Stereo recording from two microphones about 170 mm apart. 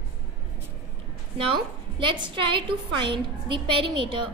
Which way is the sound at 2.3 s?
30° right (ahead or behind).